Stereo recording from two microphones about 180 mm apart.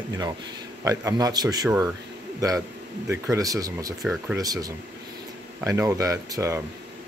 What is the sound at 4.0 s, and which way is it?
Speech, centre (ahead or behind).